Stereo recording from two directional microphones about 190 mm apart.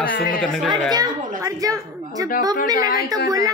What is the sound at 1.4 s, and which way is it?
Speech, 20° right (ahead or behind).